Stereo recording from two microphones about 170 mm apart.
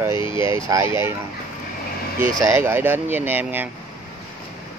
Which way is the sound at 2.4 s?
15° right (ahead or behind).